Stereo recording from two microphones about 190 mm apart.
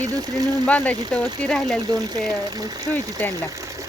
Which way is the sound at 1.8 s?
20° right (ahead or behind).